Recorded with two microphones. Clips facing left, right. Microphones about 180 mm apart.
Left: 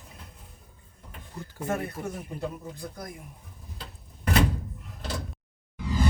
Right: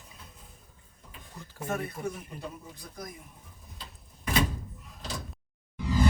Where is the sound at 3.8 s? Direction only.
65° left (ahead or behind).